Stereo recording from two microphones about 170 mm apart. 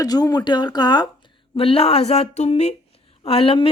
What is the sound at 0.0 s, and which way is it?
Speech, 20° left (ahead or behind).